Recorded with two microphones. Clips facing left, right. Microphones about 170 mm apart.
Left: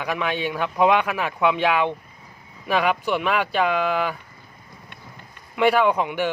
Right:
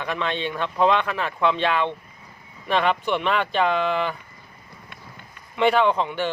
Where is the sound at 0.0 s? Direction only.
10° left (ahead or behind).